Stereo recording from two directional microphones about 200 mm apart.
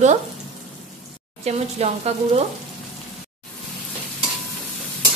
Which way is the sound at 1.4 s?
30° right (ahead or behind).